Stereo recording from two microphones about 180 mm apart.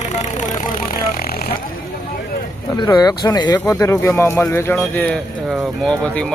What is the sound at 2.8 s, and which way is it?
Speech, 20° left (ahead or behind).